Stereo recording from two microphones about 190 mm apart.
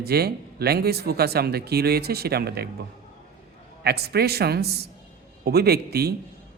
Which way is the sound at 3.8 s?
55° right (ahead or behind).